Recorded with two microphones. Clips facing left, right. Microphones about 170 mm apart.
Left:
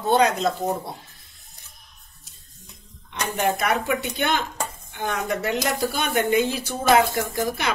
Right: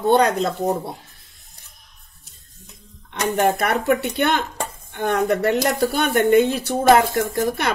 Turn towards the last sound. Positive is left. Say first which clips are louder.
# right 4 dB
turn(degrees=-55)  # may be behind; listen again after turning